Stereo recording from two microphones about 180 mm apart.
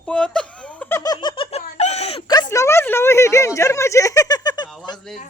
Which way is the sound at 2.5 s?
15° left (ahead or behind).